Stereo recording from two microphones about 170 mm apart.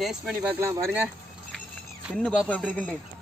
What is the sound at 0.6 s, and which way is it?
Speech, 15° right (ahead or behind).